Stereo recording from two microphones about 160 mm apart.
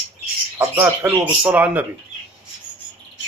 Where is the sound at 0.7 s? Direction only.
10° right (ahead or behind).